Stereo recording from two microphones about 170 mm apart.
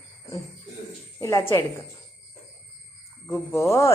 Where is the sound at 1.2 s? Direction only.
15° left (ahead or behind).